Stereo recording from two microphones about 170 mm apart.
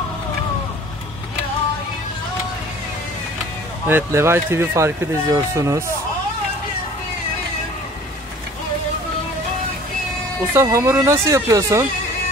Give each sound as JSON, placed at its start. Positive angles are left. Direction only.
{"t": 3.8, "sound": "speech", "side_deg": -15}
{"t": 10.5, "sound": "speech", "side_deg": -15}